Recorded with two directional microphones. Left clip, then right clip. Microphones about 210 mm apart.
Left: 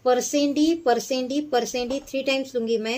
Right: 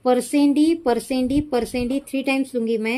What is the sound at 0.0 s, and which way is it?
A woman's voice, 45° right (ahead or behind).